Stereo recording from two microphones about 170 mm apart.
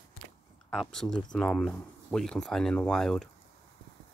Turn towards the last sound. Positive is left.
turn(degrees=5)  # may be behind; listen again after turning